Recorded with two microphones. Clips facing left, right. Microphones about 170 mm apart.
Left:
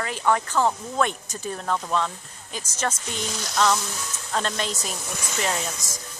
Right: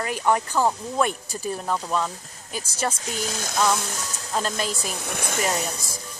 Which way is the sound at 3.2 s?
50° right (ahead or behind).